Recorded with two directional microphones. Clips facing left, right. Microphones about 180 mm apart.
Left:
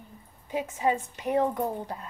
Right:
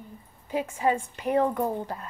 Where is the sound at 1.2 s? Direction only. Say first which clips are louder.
Right 2 dB; 20° left (ahead or behind).